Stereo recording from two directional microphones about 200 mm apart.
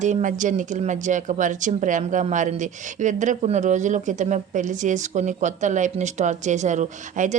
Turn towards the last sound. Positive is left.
turn(degrees=-35)  # may be behind; listen again after turning